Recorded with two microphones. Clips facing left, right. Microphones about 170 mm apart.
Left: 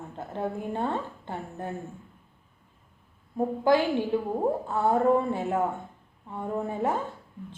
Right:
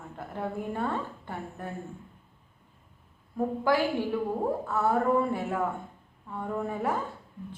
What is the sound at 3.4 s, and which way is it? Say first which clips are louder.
A woman's voice: left 3 dB; 20° left (ahead or behind).